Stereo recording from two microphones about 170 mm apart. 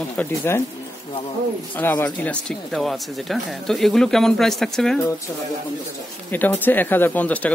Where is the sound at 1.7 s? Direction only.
10° left (ahead or behind).